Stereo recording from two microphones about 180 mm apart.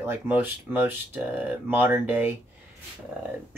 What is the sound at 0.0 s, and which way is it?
Speech, 10° right (ahead or behind).